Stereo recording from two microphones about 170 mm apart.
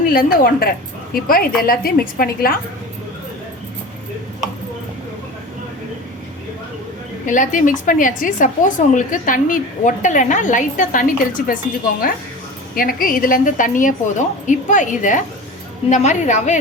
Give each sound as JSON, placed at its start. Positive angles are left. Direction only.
{"t": 0.0, "sound": "a woman's voice", "side_deg": 60}
{"t": 7.3, "sound": "a woman's voice", "side_deg": 50}
{"t": 12.7, "sound": "a woman's voice", "side_deg": 55}